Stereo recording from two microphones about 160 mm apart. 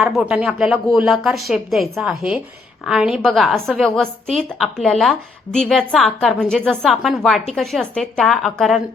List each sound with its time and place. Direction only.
0.0 s a woman's voice: 5° right (ahead or behind)